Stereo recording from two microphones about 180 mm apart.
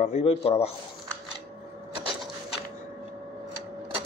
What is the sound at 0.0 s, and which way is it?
Speech, 35° left (ahead or behind).